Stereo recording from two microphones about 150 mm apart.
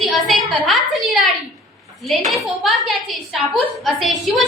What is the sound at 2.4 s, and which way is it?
A woman's voice, centre (ahead or behind).